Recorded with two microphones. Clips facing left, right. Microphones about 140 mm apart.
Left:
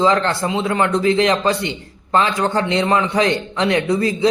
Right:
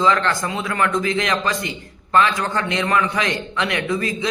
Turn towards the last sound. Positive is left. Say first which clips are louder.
# left 6 dB
turn(degrees=35)  # may be behind; listen again after turning